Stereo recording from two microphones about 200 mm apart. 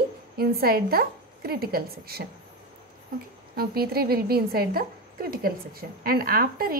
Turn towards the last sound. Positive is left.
turn(degrees=-45)  # may be behind; listen again after turning